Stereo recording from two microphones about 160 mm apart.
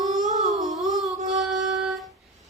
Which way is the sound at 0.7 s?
Centre (ahead or behind).